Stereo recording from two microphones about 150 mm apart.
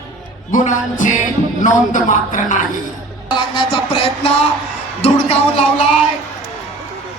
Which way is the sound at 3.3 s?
30° left (ahead or behind).